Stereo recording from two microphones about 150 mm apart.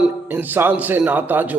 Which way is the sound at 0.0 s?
10° right (ahead or behind).